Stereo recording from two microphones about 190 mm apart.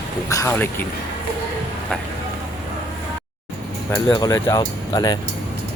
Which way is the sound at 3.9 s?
20° left (ahead or behind).